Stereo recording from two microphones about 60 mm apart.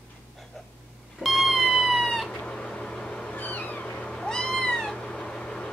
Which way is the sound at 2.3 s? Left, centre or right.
Centre.